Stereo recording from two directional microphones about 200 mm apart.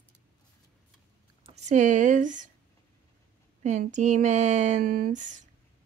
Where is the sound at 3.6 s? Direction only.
35° right (ahead or behind).